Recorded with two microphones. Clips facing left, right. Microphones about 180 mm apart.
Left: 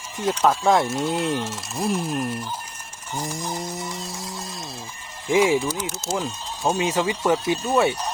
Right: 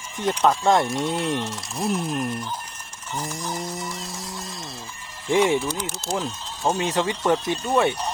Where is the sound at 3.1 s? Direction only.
15° left (ahead or behind).